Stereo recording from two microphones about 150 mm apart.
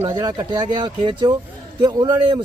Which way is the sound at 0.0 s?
30° right (ahead or behind).